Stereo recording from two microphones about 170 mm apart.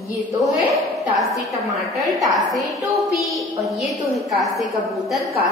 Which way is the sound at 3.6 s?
Centre (ahead or behind).